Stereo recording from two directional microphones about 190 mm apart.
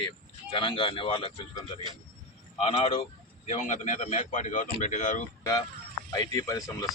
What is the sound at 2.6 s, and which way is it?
A man's voice, 30° left (ahead or behind).